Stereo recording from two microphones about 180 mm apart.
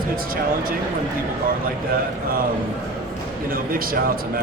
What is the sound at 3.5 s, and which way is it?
Speech, 55° right (ahead or behind).